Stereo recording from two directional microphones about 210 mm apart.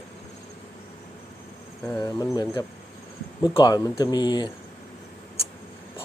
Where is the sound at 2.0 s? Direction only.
20° left (ahead or behind).